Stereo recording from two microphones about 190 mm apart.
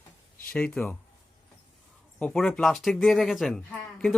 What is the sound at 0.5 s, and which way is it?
Speech, 5° left (ahead or behind).